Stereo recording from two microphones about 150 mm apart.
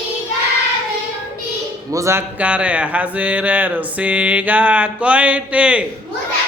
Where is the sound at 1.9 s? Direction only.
20° right (ahead or behind).